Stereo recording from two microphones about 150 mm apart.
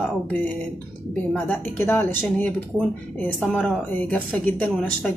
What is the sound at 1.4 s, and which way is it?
A woman's voice, 15° left (ahead or behind).